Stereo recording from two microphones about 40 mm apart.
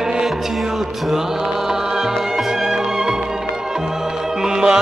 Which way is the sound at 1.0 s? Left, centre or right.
Centre.